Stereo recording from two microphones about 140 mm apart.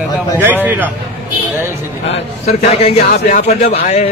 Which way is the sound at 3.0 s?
75° left (ahead or behind).